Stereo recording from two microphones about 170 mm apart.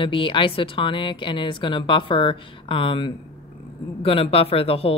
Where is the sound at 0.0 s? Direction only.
30° left (ahead or behind).